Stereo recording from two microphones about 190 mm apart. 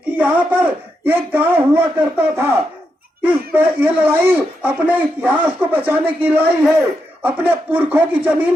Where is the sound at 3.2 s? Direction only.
10° right (ahead or behind).